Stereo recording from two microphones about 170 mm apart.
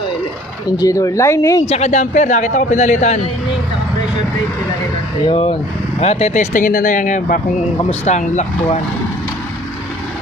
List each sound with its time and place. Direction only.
0.8 s speech: 20° left (ahead or behind)
1.7 s a man's voice: 40° left (ahead or behind)
5.3 s a man's voice: 35° left (ahead or behind)